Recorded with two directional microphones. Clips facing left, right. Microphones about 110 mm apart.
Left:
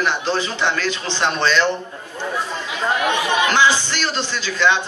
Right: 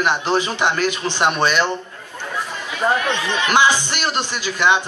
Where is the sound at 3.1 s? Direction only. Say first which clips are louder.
Left 3 dB; 15° left (ahead or behind).